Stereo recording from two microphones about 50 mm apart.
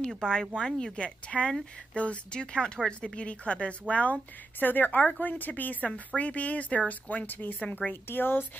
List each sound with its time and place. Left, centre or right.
0.2 s speech: centre; by 8.5 s left